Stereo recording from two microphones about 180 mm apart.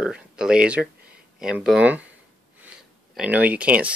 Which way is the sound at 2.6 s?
5° right (ahead or behind).